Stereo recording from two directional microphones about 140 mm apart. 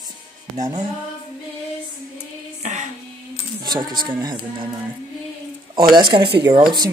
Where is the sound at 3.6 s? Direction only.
30° right (ahead or behind).